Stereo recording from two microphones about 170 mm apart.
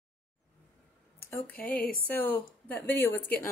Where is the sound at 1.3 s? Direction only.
10° left (ahead or behind).